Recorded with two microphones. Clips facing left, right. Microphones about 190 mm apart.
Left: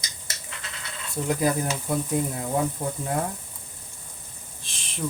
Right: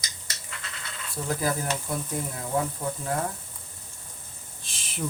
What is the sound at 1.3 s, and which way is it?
Speech, 20° left (ahead or behind).